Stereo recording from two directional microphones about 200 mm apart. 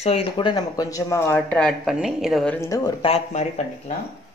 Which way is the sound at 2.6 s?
15° left (ahead or behind).